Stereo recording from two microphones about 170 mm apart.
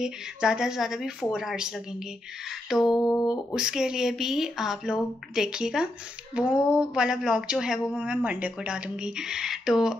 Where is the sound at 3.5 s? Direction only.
5° right (ahead or behind).